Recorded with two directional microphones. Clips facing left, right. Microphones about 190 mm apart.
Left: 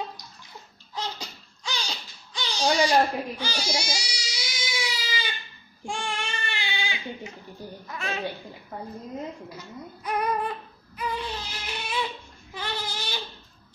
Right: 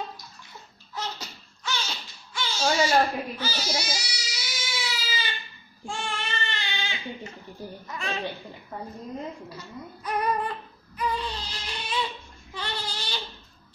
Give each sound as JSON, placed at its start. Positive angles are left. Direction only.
{"t": 0.9, "sound": "a sound", "side_deg": 15}
{"t": 2.3, "sound": "baby cry", "side_deg": 15}
{"t": 7.9, "sound": "a woman's voice", "side_deg": 0}
{"t": 10.0, "sound": "female singing", "side_deg": 10}
{"t": 11.0, "sound": "a sound", "side_deg": 10}
{"t": 12.5, "sound": "goat", "side_deg": 10}